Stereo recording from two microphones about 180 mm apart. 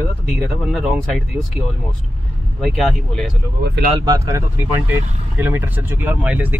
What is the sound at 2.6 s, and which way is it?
Speech, centre (ahead or behind).